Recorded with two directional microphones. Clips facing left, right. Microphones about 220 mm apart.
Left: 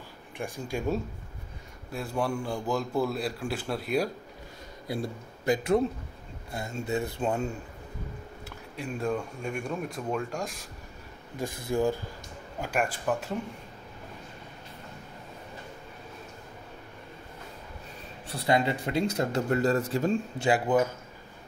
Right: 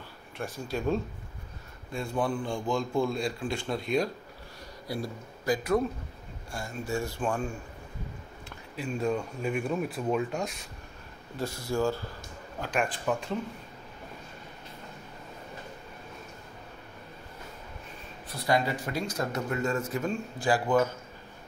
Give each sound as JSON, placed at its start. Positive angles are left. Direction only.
{"t": 0.4, "sound": "speech", "side_deg": 10}
{"t": 4.8, "sound": "speech", "side_deg": 25}
{"t": 8.5, "sound": "speech", "side_deg": 0}
{"t": 11.3, "sound": "speech", "side_deg": 15}
{"t": 18.3, "sound": "speech", "side_deg": 25}
{"t": 20.4, "sound": "speech", "side_deg": 20}